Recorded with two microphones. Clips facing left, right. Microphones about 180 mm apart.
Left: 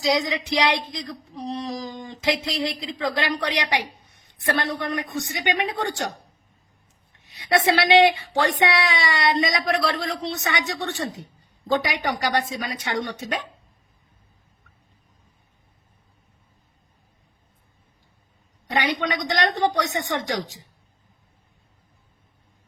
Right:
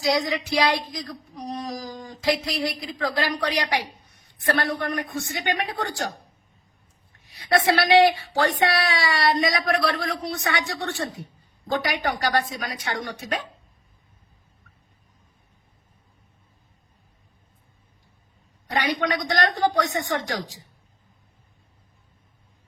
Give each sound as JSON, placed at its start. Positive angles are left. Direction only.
{"t": 0.0, "sound": "female singing", "side_deg": 20}
{"t": 7.3, "sound": "female singing", "side_deg": 25}
{"t": 18.8, "sound": "female singing", "side_deg": 20}